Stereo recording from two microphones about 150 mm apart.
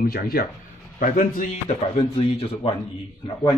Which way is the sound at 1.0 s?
65° left (ahead or behind).